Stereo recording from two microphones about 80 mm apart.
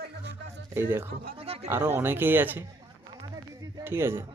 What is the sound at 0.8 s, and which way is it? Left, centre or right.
Speech, right.